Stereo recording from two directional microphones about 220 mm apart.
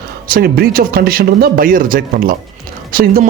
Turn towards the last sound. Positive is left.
turn(degrees=-40)  # may be behind; listen again after turning